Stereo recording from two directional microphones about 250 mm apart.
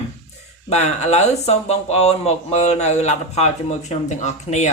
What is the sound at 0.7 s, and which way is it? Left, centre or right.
Speech, left.